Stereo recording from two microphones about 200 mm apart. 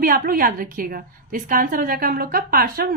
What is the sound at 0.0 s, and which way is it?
A woman's voice, 45° right (ahead or behind).